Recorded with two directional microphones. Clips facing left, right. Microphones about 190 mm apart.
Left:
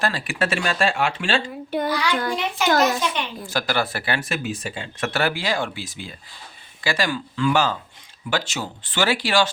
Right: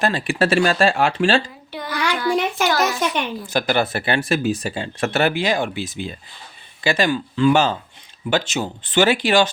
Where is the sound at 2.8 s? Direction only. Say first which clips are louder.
Right 1 dB; 45° right (ahead or behind).